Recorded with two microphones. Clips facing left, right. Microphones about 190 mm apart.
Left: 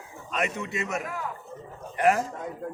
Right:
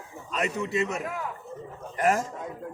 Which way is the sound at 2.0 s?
40° right (ahead or behind).